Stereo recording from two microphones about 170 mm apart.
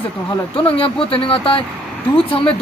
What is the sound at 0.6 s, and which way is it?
Speech, 30° left (ahead or behind).